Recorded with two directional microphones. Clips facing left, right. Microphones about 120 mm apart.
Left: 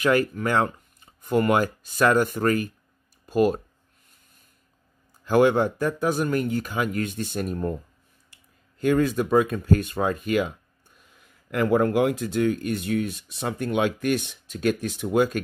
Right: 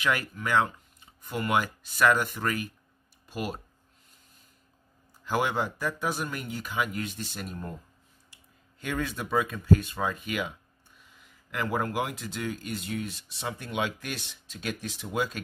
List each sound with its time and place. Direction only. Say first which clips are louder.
0.0 s speech: left 8 dB; 40° left (ahead or behind)
5.3 s speech: left 9 dB; 50° left (ahead or behind)
11.5 s speech: left 9 dB; 55° left (ahead or behind)